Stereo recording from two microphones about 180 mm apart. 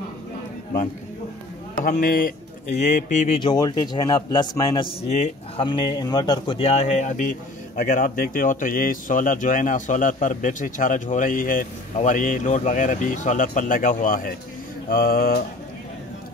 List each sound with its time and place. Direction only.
1.9 s speech: 50° left (ahead or behind)
3.3 s a man's voice: 25° left (ahead or behind); by 14.3 s 50° left (ahead or behind)
14.9 s mantra: 55° left (ahead or behind)